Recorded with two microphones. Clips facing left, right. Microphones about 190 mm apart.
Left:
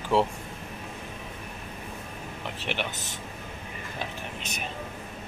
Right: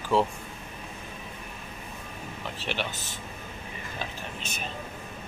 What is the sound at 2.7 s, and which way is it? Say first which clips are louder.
Speech: even; 20° left (ahead or behind).